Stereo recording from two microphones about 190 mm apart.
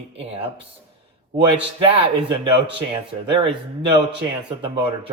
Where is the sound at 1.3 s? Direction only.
25° right (ahead or behind).